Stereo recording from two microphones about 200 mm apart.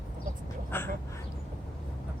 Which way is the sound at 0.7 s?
10° left (ahead or behind).